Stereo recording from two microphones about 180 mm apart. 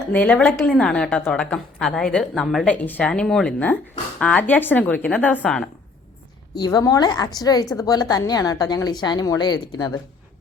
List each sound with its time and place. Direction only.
0.1 s a woman's voice: 5° left (ahead or behind)
6.6 s a woman's voice: 20° left (ahead or behind)